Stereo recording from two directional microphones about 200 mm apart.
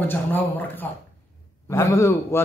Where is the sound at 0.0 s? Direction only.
10° left (ahead or behind).